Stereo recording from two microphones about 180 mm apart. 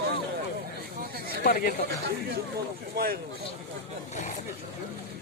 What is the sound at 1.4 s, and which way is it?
Speech, 55° left (ahead or behind).